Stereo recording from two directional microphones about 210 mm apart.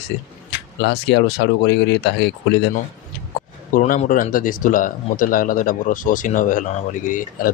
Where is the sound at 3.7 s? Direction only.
40° left (ahead or behind).